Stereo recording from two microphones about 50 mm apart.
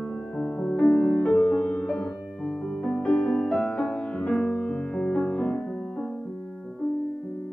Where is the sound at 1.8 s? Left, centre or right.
Centre.